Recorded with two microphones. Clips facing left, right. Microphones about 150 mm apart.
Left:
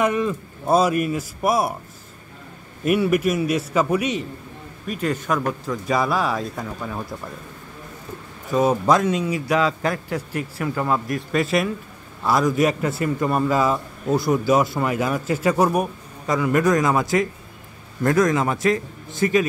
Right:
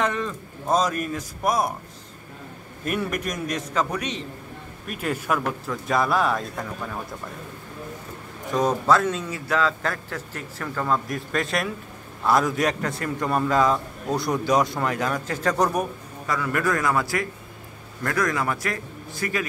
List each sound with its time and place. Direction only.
0.0 s a man's voice: 10° left (ahead or behind)
2.8 s a man's voice: 10° left (ahead or behind)
4.8 s speech: 5° right (ahead or behind)
8.5 s a man's voice: 5° left (ahead or behind)
8.8 s a man's voice: 15° left (ahead or behind)